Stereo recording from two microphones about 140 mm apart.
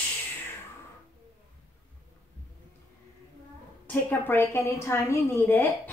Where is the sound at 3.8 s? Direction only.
10° left (ahead or behind).